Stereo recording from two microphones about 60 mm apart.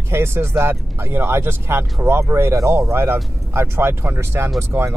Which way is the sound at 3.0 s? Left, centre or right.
Right.